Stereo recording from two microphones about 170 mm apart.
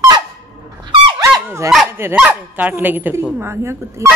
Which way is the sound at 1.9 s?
15° right (ahead or behind).